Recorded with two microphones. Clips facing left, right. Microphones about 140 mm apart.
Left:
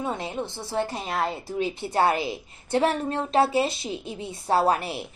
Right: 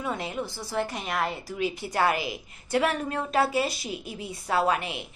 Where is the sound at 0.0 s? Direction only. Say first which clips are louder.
Left 2 dB; 25° left (ahead or behind).